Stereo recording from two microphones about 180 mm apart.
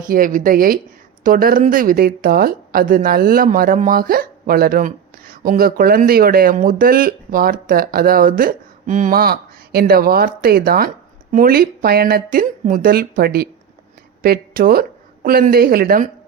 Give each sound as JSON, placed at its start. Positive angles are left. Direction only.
{"t": 0.0, "sound": "a woman's voice", "side_deg": -50}